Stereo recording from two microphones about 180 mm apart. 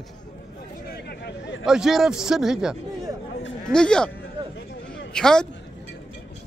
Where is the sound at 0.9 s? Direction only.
65° left (ahead or behind).